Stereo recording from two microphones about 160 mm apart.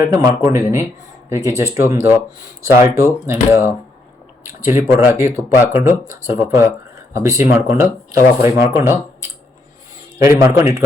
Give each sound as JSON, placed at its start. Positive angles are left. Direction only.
{"t": 0.1, "sound": "speech", "side_deg": -20}
{"t": 10.2, "sound": "a man's voice", "side_deg": -20}